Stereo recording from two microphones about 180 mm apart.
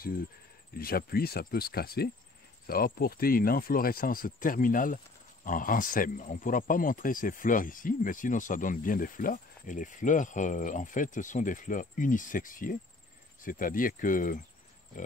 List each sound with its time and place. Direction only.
0.7 s speech: 55° left (ahead or behind)